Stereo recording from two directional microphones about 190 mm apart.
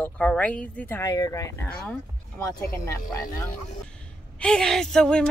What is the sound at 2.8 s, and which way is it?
Speech, 15° left (ahead or behind).